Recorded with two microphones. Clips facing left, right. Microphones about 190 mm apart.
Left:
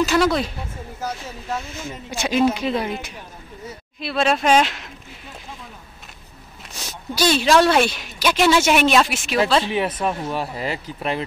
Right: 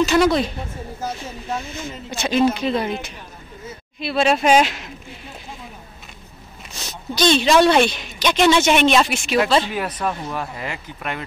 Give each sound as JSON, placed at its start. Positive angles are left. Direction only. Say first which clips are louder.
{"t": 0.0, "sound": "a woman's voice", "louder": "right 2 dB", "side_deg": 0}
{"t": 1.5, "sound": "speech", "louder": "right 1 dB", "side_deg": 10}
{"t": 4.0, "sound": "a woman's voice", "louder": "right 2 dB", "side_deg": 0}
{"t": 6.8, "sound": "a woman's voice", "louder": "right 2 dB", "side_deg": 5}
{"t": 9.7, "sound": "speech", "louder": "left 3 dB", "side_deg": 25}
{"t": 10.0, "sound": "a woman's voice", "louder": "left 1 dB", "side_deg": 0}
{"t": 10.3, "sound": "speech", "louder": "left 3 dB", "side_deg": 30}